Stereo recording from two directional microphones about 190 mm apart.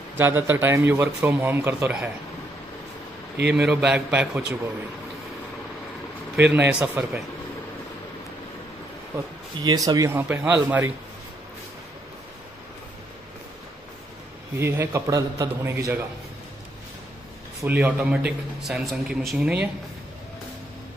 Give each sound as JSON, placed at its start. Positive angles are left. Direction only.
{"t": 0.2, "sound": "speech", "side_deg": -10}
{"t": 3.3, "sound": "a man's voice", "side_deg": -5}
{"t": 6.3, "sound": "speech", "side_deg": -10}
{"t": 9.6, "sound": "speech", "side_deg": -20}
{"t": 14.6, "sound": "speech", "side_deg": -10}
{"t": 17.6, "sound": "a man's voice", "side_deg": -10}